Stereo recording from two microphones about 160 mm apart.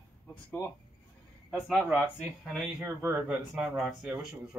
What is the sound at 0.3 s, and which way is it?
Speech, 5° left (ahead or behind).